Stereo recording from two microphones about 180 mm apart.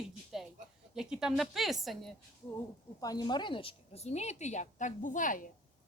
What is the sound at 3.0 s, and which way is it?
A woman's voice, 20° left (ahead or behind).